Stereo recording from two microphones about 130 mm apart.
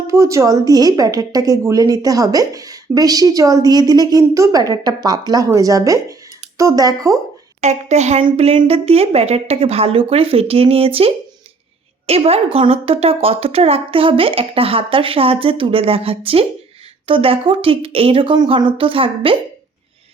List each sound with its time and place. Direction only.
0.1 s a woman's voice: 20° right (ahead or behind)
7.6 s a woman's voice: 60° right (ahead or behind); by 19.4 s 45° right (ahead or behind)